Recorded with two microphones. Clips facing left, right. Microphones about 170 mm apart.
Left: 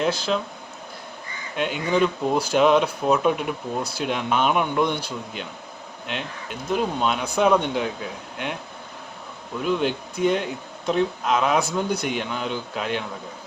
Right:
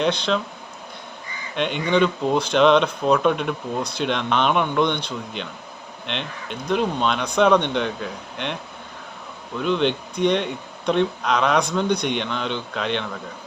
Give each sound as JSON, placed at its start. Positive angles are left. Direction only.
{"t": 0.0, "sound": "speech", "side_deg": 5}
{"t": 1.5, "sound": "speech", "side_deg": 5}
{"t": 9.6, "sound": "speech", "side_deg": 5}